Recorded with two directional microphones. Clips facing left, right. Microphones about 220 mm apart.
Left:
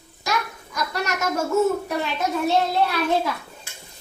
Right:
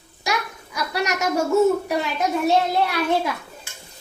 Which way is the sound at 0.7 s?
15° right (ahead or behind).